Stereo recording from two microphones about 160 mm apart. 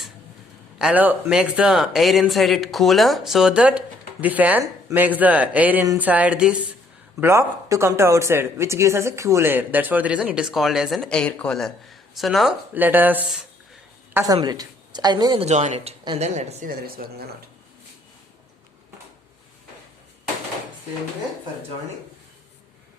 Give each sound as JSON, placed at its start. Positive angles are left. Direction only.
{"t": 0.8, "sound": "speech", "side_deg": -10}
{"t": 12.7, "sound": "speech", "side_deg": -10}
{"t": 15.4, "sound": "speech", "side_deg": -45}
{"t": 16.6, "sound": "speech", "side_deg": -70}